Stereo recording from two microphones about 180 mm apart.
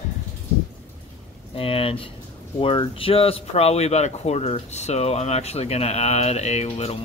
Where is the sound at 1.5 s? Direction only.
30° left (ahead or behind).